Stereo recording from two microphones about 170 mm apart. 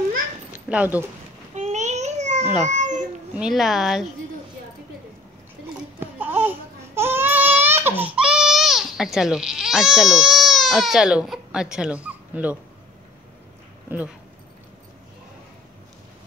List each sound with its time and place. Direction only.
0.5 s a sound: 10° right (ahead or behind)
1.5 s a sound: 45° right (ahead or behind)
2.7 s cat: 45° right (ahead or behind)
3.3 s speech: centre (ahead or behind)
5.9 s baby cry: 10° right (ahead or behind)
13.8 s speech: 10° right (ahead or behind)